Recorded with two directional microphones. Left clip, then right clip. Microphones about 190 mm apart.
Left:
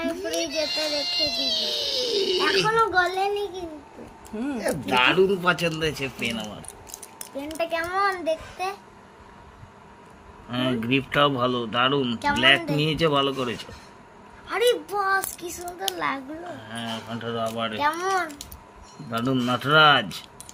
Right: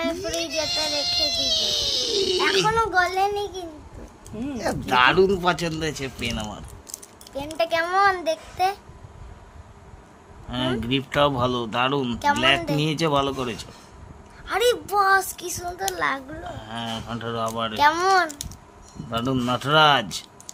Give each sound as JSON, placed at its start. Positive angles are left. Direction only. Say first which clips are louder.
{"t": 0.2, "sound": "speech", "louder": "even", "side_deg": -40}
{"t": 2.6, "sound": "speech", "louder": "even", "side_deg": -20}
{"t": 4.6, "sound": "speech", "louder": "right 3 dB", "side_deg": -40}
{"t": 10.5, "sound": "speech", "louder": "left 1 dB", "side_deg": -20}
{"t": 16.6, "sound": "speech", "louder": "right 3 dB", "side_deg": -35}